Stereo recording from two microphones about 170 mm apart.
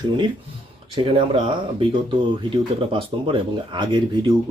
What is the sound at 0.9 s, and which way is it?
Speech, 30° right (ahead or behind).